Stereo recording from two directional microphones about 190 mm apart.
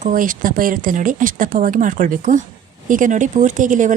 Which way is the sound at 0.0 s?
45° right (ahead or behind).